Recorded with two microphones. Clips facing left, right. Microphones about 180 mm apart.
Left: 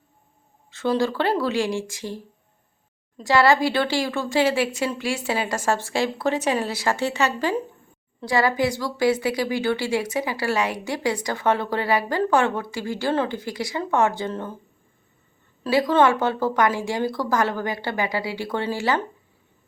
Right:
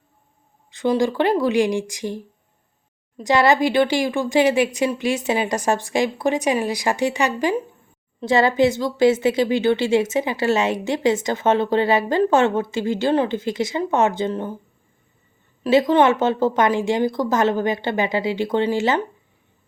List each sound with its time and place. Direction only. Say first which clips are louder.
0.7 s a woman's voice: right 3 dB; 15° right (ahead or behind)
15.6 s a woman's voice: right 3 dB; 20° right (ahead or behind)